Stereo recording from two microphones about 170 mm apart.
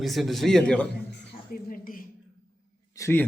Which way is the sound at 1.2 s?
55° left (ahead or behind).